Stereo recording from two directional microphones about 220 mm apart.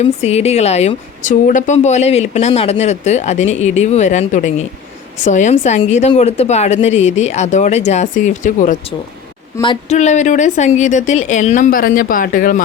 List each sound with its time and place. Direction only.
0.0 s a woman's voice: 30° left (ahead or behind)